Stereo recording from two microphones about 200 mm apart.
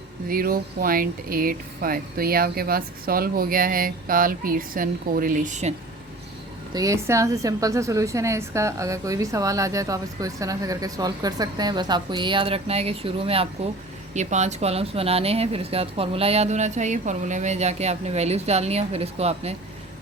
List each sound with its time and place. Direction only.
0.3 s speech: 45° right (ahead or behind)
6.7 s a woman's voice: 15° right (ahead or behind); by 19.5 s 30° right (ahead or behind)